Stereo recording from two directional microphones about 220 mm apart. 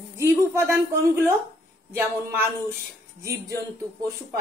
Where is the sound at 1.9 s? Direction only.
10° right (ahead or behind).